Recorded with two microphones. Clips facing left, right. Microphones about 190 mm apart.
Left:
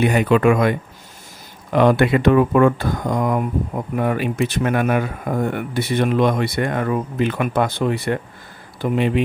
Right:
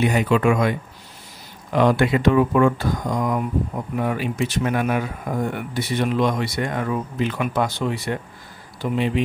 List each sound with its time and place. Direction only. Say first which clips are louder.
0.0 s speech: left 3 dB; 60° left (ahead or behind)